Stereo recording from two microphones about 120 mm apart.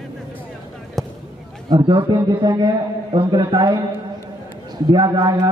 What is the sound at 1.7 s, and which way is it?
A man's voice, 40° right (ahead or behind).